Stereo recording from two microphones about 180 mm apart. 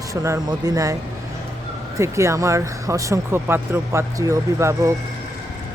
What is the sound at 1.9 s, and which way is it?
Speech, 15° right (ahead or behind).